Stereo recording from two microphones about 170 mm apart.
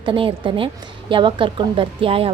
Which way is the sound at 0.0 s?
30° right (ahead or behind).